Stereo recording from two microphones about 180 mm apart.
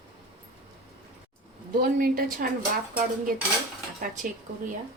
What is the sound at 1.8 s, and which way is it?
Speech, 55° right (ahead or behind).